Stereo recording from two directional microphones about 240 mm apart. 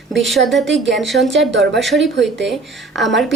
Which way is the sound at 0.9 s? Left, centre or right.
Centre.